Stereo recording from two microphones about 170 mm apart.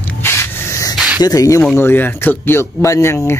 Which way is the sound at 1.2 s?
20° left (ahead or behind).